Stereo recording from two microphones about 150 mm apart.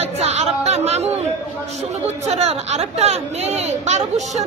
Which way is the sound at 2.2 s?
45° right (ahead or behind).